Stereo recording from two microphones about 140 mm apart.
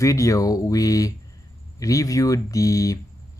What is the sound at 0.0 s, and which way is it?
Speech, 20° left (ahead or behind).